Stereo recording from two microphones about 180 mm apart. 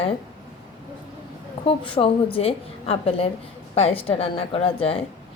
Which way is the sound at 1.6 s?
30° left (ahead or behind).